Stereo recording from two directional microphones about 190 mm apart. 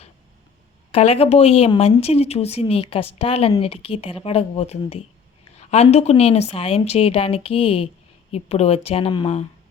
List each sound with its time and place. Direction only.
0.9 s speech: 30° left (ahead or behind)